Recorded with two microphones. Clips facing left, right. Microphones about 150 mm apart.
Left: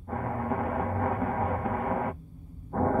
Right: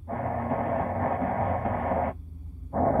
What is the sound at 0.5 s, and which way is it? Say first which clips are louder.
Train: right 2 dB; 50° right (ahead or behind).